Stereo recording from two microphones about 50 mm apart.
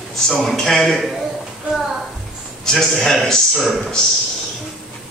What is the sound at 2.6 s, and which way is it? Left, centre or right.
A man's voice, centre.